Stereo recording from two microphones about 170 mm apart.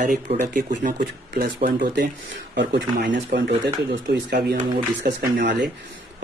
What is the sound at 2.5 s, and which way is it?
Speech, 80° right.